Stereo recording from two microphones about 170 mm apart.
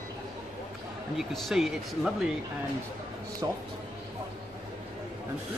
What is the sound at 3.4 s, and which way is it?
Speech, 25° right (ahead or behind).